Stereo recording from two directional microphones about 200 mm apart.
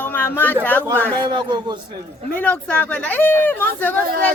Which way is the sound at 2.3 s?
10° left (ahead or behind).